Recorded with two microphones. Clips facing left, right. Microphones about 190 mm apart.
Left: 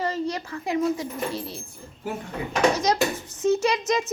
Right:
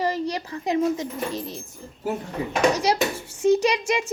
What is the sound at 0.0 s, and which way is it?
Speech, 15° right (ahead or behind).